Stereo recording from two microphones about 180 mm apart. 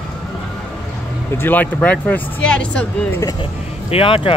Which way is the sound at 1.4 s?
10° left (ahead or behind).